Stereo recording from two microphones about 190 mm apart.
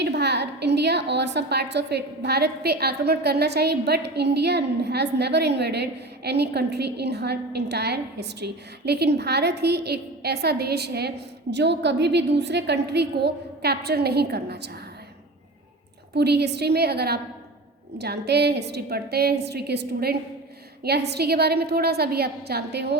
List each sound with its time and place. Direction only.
0.0 s a woman's voice: 60° right (ahead or behind)
16.1 s a woman's voice: 60° right (ahead or behind)